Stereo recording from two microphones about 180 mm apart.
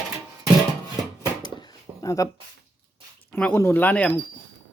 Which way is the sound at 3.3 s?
10° left (ahead or behind).